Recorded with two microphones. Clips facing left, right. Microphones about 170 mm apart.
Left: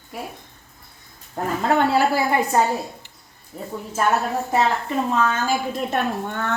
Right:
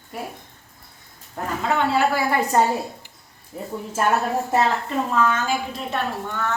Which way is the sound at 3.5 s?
5° right (ahead or behind).